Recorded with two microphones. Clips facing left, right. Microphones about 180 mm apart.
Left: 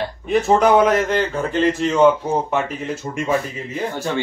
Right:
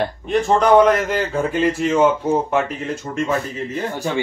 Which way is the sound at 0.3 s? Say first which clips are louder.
Even; centre (ahead or behind).